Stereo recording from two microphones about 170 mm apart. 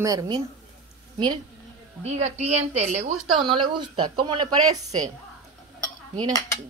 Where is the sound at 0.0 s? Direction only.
20° right (ahead or behind).